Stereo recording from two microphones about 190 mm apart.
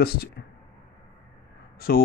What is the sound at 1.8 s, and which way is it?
Speech, 50° left (ahead or behind).